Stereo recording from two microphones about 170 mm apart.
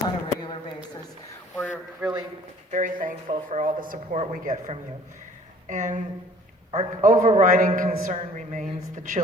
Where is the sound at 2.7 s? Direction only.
50° right (ahead or behind).